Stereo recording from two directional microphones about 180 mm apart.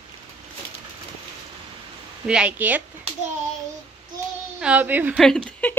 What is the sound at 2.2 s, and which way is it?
Speech, 5° right (ahead or behind).